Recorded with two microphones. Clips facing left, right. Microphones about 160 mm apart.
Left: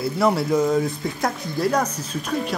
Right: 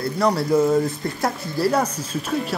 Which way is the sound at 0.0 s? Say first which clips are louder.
Even; 5° left (ahead or behind).